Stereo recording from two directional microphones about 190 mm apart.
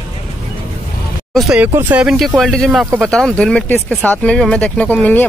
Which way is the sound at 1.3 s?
Centre (ahead or behind).